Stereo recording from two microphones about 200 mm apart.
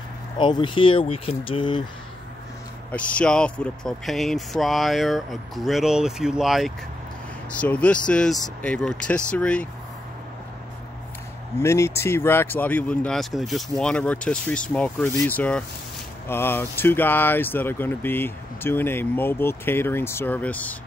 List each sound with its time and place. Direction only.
0.4 s speech: 25° left (ahead or behind)
2.9 s speech: 5° left (ahead or behind)
11.6 s speech: 15° left (ahead or behind)